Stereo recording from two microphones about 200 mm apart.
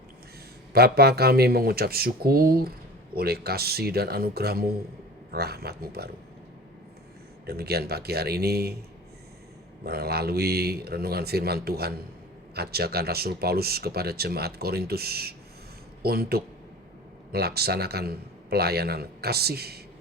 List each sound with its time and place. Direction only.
0.7 s speech: 50° right (ahead or behind)
7.4 s speech: 50° right (ahead or behind)
9.8 s speech: 50° right (ahead or behind)